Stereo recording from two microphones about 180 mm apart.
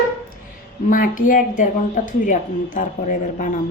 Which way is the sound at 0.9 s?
50° left (ahead or behind).